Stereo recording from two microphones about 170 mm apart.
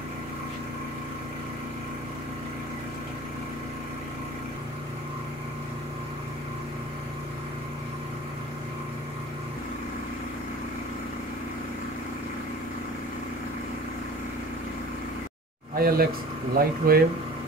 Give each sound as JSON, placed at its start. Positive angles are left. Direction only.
{"t": 15.7, "sound": "speech", "side_deg": -60}